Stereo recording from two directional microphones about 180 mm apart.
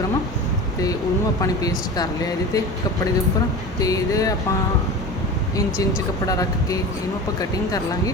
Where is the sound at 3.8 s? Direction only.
20° left (ahead or behind).